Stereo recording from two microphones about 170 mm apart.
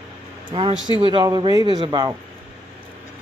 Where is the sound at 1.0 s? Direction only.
25° right (ahead or behind).